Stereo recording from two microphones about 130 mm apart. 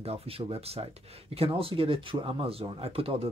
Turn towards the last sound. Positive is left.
turn(degrees=-45)  # may be behind; listen again after turning